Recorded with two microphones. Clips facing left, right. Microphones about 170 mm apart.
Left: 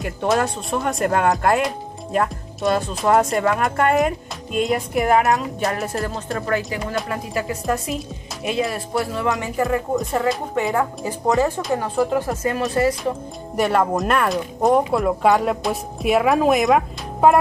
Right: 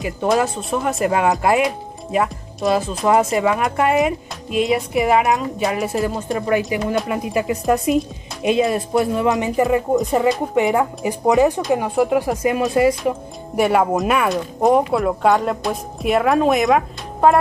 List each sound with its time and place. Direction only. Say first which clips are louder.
0.0 s speech: right 2 dB; 5° right (ahead or behind)
13.6 s speech: right 2 dB; 5° right (ahead or behind)